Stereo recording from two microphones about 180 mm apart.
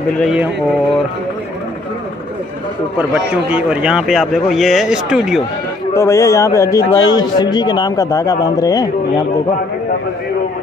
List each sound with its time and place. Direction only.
0.1 s a man's voice: centre (ahead or behind)
3.0 s a man's voice: 5° right (ahead or behind)
5.9 s a man's voice: 15° left (ahead or behind)